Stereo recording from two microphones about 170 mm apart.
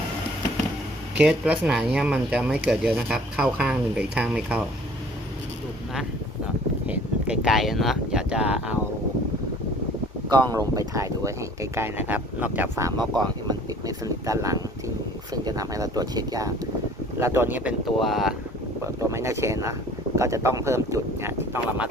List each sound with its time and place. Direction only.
1.2 s speech: 5° right (ahead or behind)
6.8 s speech: 10° right (ahead or behind)
10.2 s speech: 25° right (ahead or behind); by 18.3 s centre (ahead or behind)
18.9 s speech: 15° right (ahead or behind)